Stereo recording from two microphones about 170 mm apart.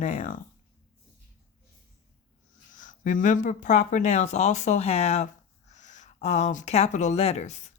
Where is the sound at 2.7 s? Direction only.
50° left (ahead or behind).